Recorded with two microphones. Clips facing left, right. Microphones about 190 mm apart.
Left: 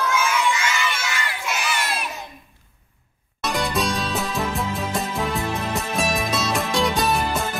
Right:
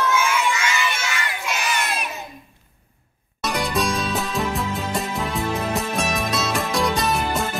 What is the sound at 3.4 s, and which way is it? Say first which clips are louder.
Music: even; centre (ahead or behind).